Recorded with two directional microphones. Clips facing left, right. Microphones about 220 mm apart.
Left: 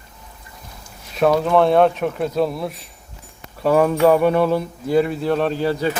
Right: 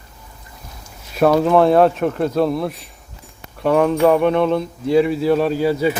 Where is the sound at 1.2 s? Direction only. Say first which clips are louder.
Right 2 dB; centre (ahead or behind).